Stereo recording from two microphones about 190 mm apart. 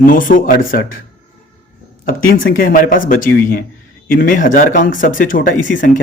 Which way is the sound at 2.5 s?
45° left (ahead or behind).